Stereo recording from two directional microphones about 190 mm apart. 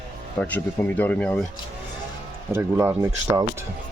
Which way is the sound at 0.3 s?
10° left (ahead or behind).